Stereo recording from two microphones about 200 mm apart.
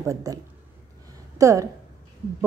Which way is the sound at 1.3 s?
15° right (ahead or behind).